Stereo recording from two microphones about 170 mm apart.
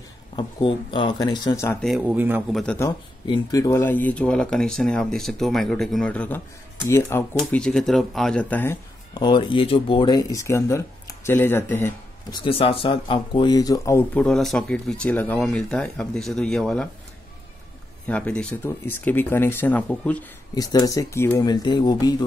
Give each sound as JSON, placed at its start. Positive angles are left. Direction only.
{"t": 0.4, "sound": "speech", "side_deg": 30}
{"t": 1.8, "sound": "a man's voice", "side_deg": -5}
{"t": 2.5, "sound": "speech", "side_deg": 5}
{"t": 3.3, "sound": "speech", "side_deg": 20}
{"t": 9.1, "sound": "speech", "side_deg": 25}
{"t": 12.3, "sound": "speech", "side_deg": 30}
{"t": 18.0, "sound": "speech", "side_deg": 5}
{"t": 20.5, "sound": "speech", "side_deg": 20}